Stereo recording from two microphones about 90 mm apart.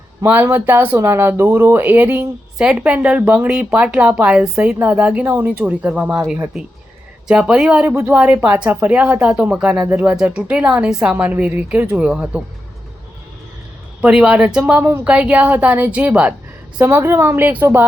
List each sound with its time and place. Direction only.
0.6 s speech: 20° right (ahead or behind)
7.3 s speech: 10° right (ahead or behind)
14.0 s speech: 10° right (ahead or behind)
16.8 s speech: 25° right (ahead or behind)